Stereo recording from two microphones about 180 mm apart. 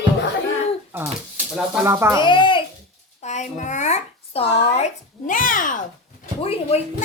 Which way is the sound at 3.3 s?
45° left (ahead or behind).